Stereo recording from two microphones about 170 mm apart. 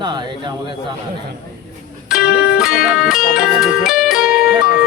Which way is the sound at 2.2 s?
70° left (ahead or behind).